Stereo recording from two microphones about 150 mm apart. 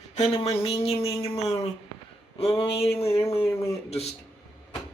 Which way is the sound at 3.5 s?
20° left (ahead or behind).